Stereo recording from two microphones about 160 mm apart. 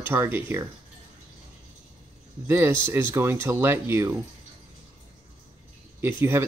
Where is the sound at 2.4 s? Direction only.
15° right (ahead or behind).